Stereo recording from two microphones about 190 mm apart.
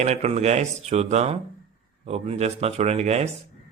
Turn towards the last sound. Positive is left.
turn(degrees=-35)  # may be behind; listen again after turning